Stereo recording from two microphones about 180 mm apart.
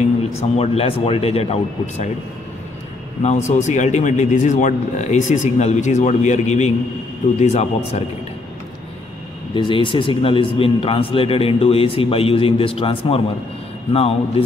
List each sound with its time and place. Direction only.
0.3 s a man's voice: 35° left (ahead or behind)
3.2 s a man's voice: 40° left (ahead or behind)
9.5 s a man's voice: 25° left (ahead or behind)